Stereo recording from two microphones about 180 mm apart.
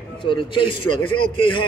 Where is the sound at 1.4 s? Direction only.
25° left (ahead or behind).